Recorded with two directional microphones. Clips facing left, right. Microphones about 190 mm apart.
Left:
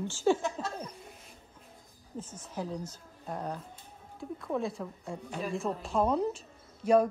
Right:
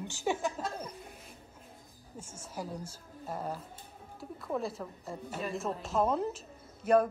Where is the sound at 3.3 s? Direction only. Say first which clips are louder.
Left 1 dB; 5° right (ahead or behind).